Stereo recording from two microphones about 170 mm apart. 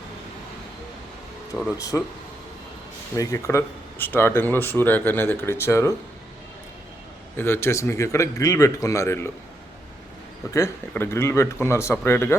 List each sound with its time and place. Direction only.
1.5 s speech: 5° left (ahead or behind)
3.2 s speech: 15° left (ahead or behind)
7.3 s speech: 15° left (ahead or behind)
10.5 s speech: 15° left (ahead or behind)